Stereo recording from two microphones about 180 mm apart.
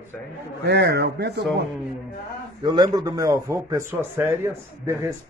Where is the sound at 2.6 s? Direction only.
20° right (ahead or behind).